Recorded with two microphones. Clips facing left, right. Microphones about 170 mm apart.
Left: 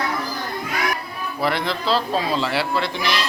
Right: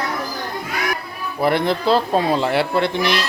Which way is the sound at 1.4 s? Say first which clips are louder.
Right 5 dB; 55° right (ahead or behind).